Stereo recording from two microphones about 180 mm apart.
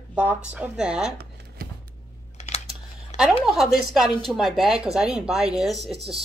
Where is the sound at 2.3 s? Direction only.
35° left (ahead or behind).